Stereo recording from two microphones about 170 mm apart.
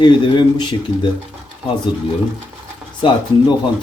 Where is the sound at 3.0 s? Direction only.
25° left (ahead or behind).